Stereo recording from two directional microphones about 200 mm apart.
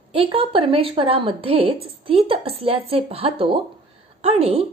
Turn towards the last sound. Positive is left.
turn(degrees=-30)  # may be behind; listen again after turning